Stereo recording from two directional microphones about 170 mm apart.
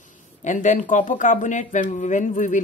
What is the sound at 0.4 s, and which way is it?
A woman's voice, 45° left (ahead or behind).